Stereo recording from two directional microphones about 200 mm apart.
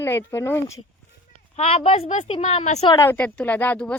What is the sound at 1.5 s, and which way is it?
A woman's voice, 30° left (ahead or behind).